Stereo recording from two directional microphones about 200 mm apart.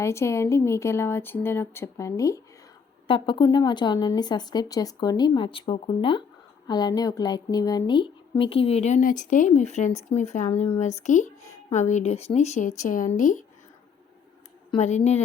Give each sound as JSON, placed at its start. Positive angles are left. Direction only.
{"t": 0.0, "sound": "a woman's voice", "side_deg": 15}
{"t": 14.7, "sound": "speech", "side_deg": 35}